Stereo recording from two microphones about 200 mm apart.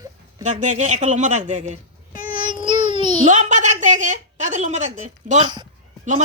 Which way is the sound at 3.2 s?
40° right (ahead or behind).